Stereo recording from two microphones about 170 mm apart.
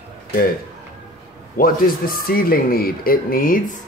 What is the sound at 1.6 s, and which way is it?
Speech, 60° left (ahead or behind).